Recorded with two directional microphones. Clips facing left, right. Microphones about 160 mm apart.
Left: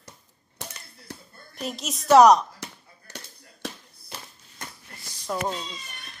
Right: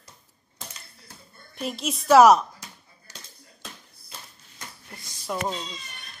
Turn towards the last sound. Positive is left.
turn(degrees=0)  # may be behind; listen again after turning